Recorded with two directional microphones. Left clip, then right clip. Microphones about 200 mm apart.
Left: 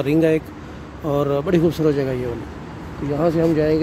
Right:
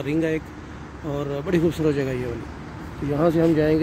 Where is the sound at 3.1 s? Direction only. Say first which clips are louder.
Left 1 dB; 5° right (ahead or behind).